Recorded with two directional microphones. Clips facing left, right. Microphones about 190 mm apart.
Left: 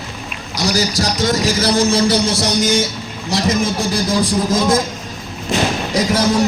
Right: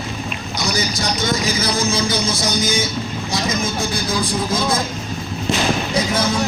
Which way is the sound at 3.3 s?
75° left (ahead or behind).